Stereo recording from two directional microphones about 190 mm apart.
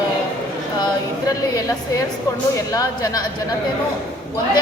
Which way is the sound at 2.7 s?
20° left (ahead or behind).